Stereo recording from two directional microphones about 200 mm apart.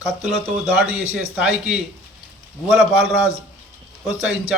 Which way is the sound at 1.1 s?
5° right (ahead or behind).